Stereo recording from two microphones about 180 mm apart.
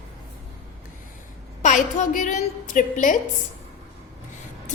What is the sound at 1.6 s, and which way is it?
A woman's voice, 45° left (ahead or behind).